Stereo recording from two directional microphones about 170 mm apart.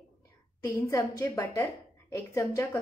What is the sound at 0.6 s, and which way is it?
A woman's voice, 20° left (ahead or behind).